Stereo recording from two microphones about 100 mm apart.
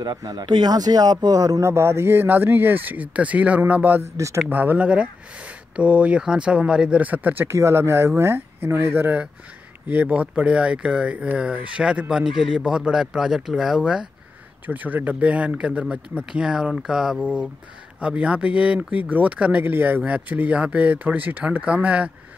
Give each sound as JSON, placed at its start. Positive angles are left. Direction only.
{"t": 0.0, "sound": "speech", "side_deg": -45}
{"t": 1.6, "sound": "speech", "side_deg": -25}